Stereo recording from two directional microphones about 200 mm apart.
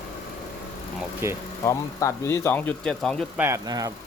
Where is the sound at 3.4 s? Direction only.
15° right (ahead or behind).